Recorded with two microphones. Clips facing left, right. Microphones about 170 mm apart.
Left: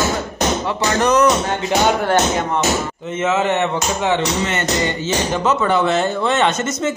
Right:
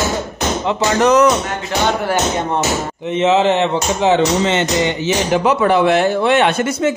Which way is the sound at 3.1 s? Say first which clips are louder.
Right 5 dB; 20° right (ahead or behind).